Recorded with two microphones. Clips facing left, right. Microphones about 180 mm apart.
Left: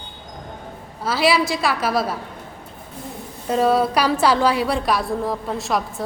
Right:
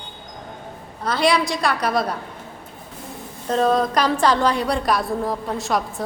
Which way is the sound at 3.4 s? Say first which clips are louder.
Left 1 dB; 10° left (ahead or behind).